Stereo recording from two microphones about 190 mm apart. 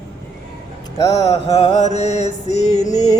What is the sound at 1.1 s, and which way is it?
Mantra, 30° left (ahead or behind).